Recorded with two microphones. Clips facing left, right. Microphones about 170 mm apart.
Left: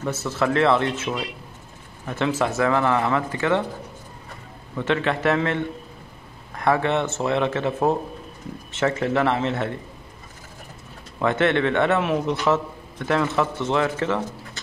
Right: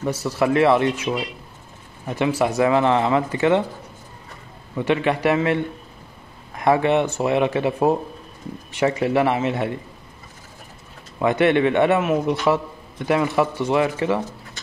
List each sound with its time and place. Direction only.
0.0 s a man's voice: 10° right (ahead or behind)
4.7 s a man's voice: 15° right (ahead or behind)
11.1 s a man's voice: 15° right (ahead or behind)